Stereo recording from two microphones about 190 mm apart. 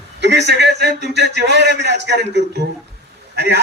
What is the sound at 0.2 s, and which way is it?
A man's voice, 65° right (ahead or behind).